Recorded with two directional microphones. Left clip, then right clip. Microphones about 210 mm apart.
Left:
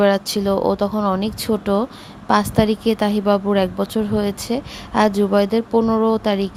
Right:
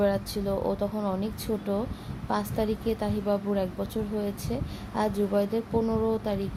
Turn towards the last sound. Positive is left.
turn(degrees=25)  # may be behind; listen again after turning